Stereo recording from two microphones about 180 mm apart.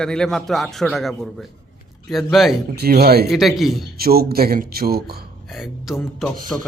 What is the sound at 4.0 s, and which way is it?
Speech, 55° right (ahead or behind).